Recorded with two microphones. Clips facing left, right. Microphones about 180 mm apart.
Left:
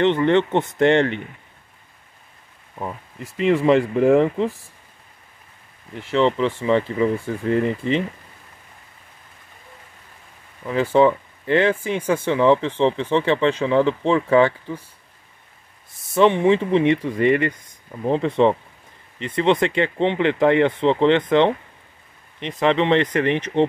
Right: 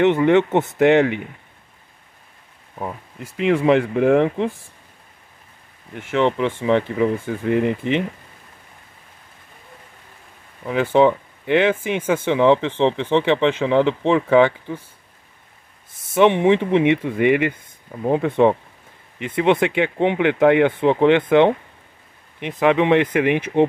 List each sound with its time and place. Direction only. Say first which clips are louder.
0.0 s speech: right 2 dB; 10° right (ahead or behind)
2.8 s speech: right 1 dB; centre (ahead or behind)
6.0 s speech: even; 10° right (ahead or behind)
7.0 s speech: right 1 dB; centre (ahead or behind)
7.4 s speech: right 1 dB; 10° right (ahead or behind)
10.9 s speech: right 1 dB; 20° right (ahead or behind)
16.3 s speech: right 1 dB; 20° right (ahead or behind)
16.7 s speech: right 1 dB; 5° right (ahead or behind)